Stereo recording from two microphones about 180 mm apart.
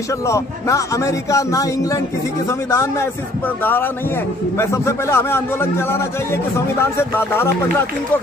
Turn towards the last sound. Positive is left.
turn(degrees=15)  # may be behind; listen again after turning